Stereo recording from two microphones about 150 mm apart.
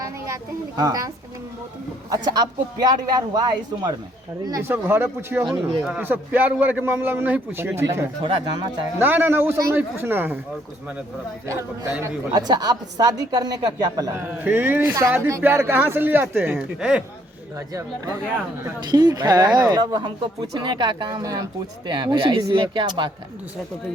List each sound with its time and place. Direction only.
0.8 s speech: 25° right (ahead or behind)
4.7 s a woman's voice: 15° right (ahead or behind)
5.5 s a woman's voice: 5° right (ahead or behind)
12.0 s a woman's voice: 25° right (ahead or behind); by 17.0 s 5° right (ahead or behind)
17.7 s speech: 20° right (ahead or behind)